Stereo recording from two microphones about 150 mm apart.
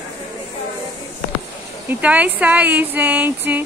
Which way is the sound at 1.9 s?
10° right (ahead or behind).